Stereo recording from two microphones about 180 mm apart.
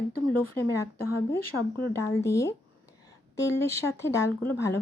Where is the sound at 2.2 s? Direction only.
15° left (ahead or behind).